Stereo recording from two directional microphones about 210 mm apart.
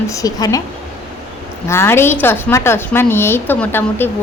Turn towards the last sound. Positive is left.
turn(degrees=10)  # may be behind; listen again after turning